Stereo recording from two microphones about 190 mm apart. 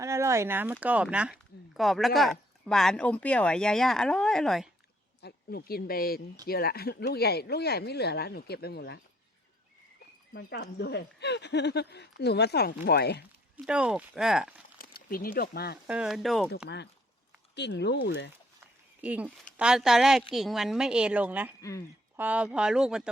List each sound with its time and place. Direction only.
0.0 s speech: 15° right (ahead or behind); by 4.7 s centre (ahead or behind)
5.2 s speech: 55° left (ahead or behind)
10.3 s speech: 60° left (ahead or behind)
13.7 s speech: 5° right (ahead or behind)
14.8 s speech: 50° left (ahead or behind)
15.9 s speech: 5° right (ahead or behind)
16.6 s speech: 65° left (ahead or behind)
19.0 s speech: 10° right (ahead or behind)
21.6 s speech: 15° left (ahead or behind)
22.1 s speech: 10° right (ahead or behind)